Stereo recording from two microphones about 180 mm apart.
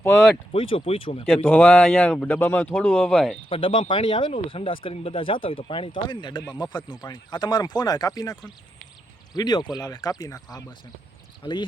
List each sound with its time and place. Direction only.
0.5 s speech: 30° left (ahead or behind)
1.5 s speech: 10° left (ahead or behind)
3.5 s speech: 30° left (ahead or behind)